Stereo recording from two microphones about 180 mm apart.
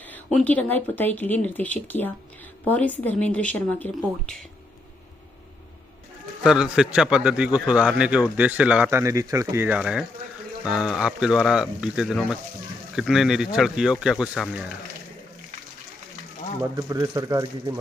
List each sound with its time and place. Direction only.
0.1 s speech: 5° left (ahead or behind)
6.4 s a man's voice: 5° right (ahead or behind)
16.7 s speech: 15° right (ahead or behind)